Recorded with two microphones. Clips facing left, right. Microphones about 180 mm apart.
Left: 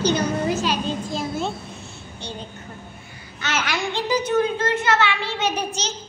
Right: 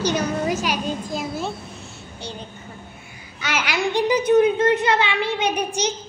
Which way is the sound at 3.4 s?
10° right (ahead or behind).